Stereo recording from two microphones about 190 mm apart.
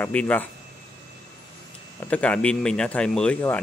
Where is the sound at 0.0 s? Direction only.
5° left (ahead or behind).